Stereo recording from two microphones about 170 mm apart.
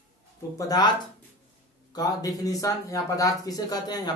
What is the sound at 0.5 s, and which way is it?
Speech, 20° left (ahead or behind).